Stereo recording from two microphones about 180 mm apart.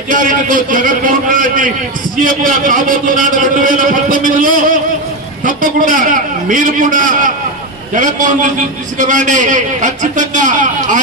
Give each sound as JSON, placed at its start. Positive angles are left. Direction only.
{"t": 0.1, "sound": "a man's voice", "side_deg": -50}